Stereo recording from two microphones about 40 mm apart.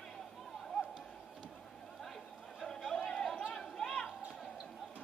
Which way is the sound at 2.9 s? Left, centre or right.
Centre.